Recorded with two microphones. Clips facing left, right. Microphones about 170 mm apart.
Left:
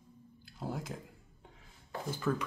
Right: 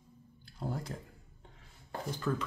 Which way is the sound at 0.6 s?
5° left (ahead or behind).